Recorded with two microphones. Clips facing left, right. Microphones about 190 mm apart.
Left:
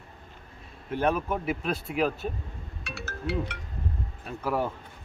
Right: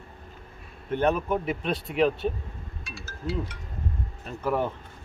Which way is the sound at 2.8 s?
70° left (ahead or behind).